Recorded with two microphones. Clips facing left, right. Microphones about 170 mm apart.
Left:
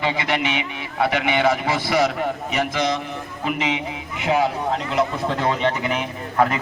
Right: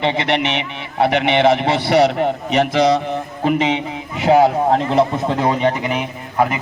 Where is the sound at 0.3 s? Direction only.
65° right (ahead or behind).